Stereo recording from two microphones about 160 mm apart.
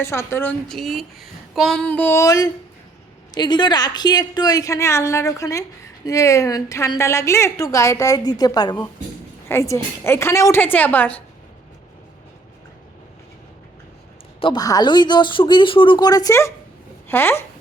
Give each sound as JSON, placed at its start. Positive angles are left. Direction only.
{"t": 0.0, "sound": "a woman's voice", "side_deg": 15}
{"t": 0.7, "sound": "a woman's voice", "side_deg": 0}
{"t": 14.3, "sound": "a woman's voice", "side_deg": 30}